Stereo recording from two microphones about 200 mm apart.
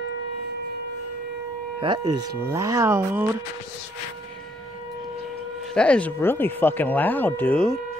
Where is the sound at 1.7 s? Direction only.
25° right (ahead or behind).